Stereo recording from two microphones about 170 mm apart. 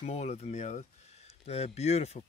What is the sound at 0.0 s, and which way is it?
Speech, 40° left (ahead or behind).